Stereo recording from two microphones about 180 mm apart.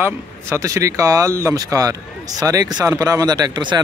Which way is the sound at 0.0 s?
15° right (ahead or behind).